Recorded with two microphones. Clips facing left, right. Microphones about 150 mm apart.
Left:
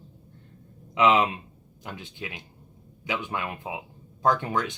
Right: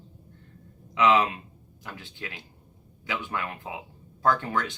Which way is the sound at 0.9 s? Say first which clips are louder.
Left 1 dB; 20° left (ahead or behind).